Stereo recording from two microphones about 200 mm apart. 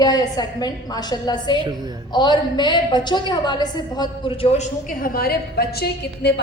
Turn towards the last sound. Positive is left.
turn(degrees=55)  # may be behind; listen again after turning